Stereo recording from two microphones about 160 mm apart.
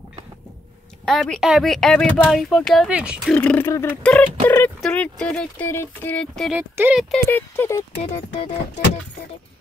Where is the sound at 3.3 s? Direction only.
10° left (ahead or behind).